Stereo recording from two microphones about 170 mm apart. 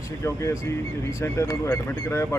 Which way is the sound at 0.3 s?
15° left (ahead or behind).